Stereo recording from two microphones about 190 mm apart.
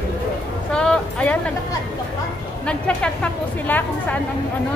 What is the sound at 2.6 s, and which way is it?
A woman's voice, 5° left (ahead or behind).